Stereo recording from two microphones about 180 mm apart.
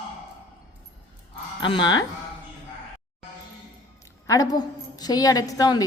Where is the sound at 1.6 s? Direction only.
25° left (ahead or behind).